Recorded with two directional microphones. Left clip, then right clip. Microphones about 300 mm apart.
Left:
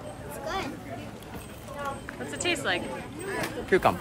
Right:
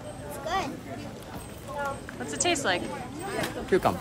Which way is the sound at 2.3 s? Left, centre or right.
Centre.